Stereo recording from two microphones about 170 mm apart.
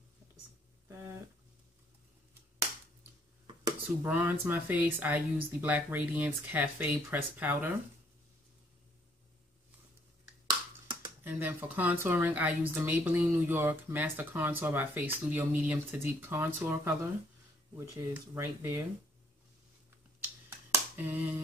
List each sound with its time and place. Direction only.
3.8 s speech: 10° right (ahead or behind)
11.2 s speech: 10° right (ahead or behind)
20.7 s a sound: 15° right (ahead or behind)